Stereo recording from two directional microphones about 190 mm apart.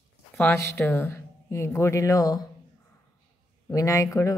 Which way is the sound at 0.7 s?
10° left (ahead or behind).